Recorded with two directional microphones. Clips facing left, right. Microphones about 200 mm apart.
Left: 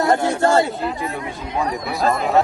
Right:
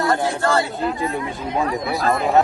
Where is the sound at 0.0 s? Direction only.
20° left (ahead or behind).